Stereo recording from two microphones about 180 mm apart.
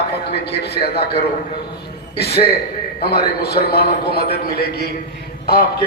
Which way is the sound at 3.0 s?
60° left (ahead or behind).